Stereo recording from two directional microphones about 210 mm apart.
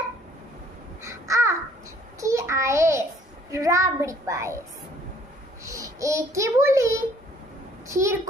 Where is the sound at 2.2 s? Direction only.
15° right (ahead or behind).